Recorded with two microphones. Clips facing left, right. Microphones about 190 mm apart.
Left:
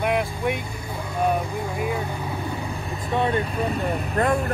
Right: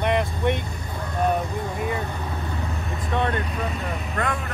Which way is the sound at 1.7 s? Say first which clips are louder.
Left 2 dB; 5° left (ahead or behind).